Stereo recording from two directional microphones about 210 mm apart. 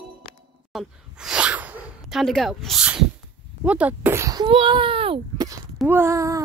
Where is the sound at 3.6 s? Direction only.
5° right (ahead or behind).